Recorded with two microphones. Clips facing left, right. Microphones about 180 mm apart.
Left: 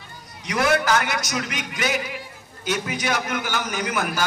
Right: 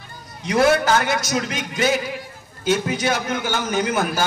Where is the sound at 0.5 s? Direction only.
25° right (ahead or behind).